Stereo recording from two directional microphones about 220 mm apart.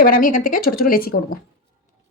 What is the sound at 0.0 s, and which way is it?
A woman's voice, 40° left (ahead or behind).